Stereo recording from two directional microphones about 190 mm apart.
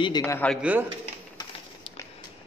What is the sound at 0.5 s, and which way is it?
Speech, 10° right (ahead or behind).